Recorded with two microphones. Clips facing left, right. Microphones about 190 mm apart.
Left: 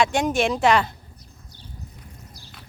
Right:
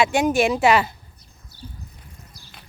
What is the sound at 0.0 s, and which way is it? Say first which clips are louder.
Speech: right 2 dB; 5° right (ahead or behind).